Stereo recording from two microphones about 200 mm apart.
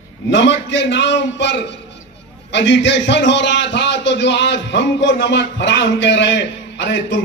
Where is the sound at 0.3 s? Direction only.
65° left (ahead or behind).